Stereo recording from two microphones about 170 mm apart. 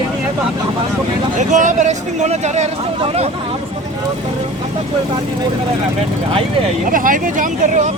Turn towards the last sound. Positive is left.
turn(degrees=-50)  # may be behind; listen again after turning